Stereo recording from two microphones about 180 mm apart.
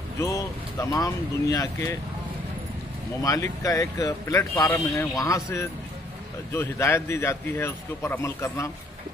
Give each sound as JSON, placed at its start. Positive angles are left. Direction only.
{"t": 0.2, "sound": "speech", "side_deg": 15}
{"t": 3.2, "sound": "speech", "side_deg": 20}